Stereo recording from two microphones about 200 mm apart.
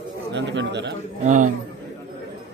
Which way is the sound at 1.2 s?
40° right (ahead or behind).